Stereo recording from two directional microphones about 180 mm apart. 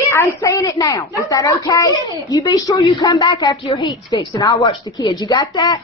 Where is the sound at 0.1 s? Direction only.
15° left (ahead or behind).